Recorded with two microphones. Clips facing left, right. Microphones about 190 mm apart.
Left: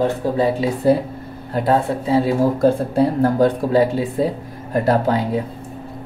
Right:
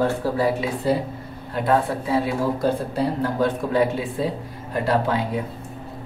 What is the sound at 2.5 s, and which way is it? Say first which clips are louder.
Speech: left 7 dB; 50° left (ahead or behind).